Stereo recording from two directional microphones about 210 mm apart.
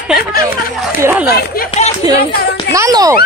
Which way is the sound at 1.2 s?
50° left (ahead or behind).